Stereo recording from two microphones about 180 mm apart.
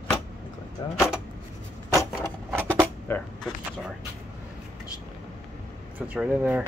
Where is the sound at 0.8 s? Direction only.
25° left (ahead or behind).